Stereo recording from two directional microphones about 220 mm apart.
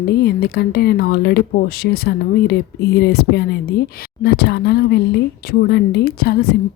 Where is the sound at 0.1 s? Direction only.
45° left (ahead or behind).